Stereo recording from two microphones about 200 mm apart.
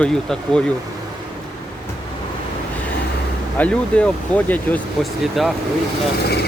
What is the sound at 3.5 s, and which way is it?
Speech, 5° left (ahead or behind).